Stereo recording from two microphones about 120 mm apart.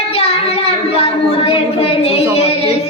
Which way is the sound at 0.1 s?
55° left (ahead or behind).